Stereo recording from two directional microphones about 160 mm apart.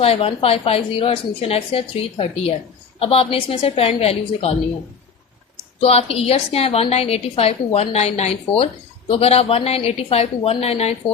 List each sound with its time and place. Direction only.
0.0 s a woman's voice: 35° left (ahead or behind)
5.8 s a woman's voice: 40° left (ahead or behind)